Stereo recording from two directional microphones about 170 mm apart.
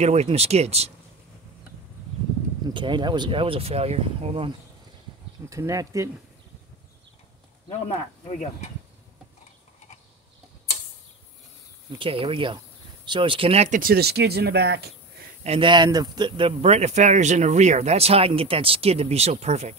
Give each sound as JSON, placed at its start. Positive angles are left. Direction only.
{"t": 0.0, "sound": "speech", "side_deg": -40}
{"t": 2.7, "sound": "speech", "side_deg": -30}
{"t": 5.5, "sound": "speech", "side_deg": -20}
{"t": 8.3, "sound": "speech", "side_deg": 40}
{"t": 12.0, "sound": "speech", "side_deg": -30}
{"t": 15.4, "sound": "speech", "side_deg": -30}